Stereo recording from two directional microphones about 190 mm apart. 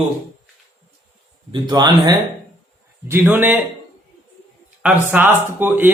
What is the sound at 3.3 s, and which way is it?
Speech, 10° right (ahead or behind).